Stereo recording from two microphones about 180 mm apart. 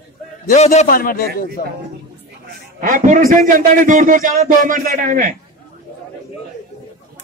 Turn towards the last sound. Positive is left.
turn(degrees=-45)  # may be behind; listen again after turning